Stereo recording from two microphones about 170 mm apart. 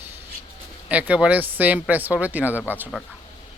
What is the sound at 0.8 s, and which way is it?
Speech, 5° right (ahead or behind).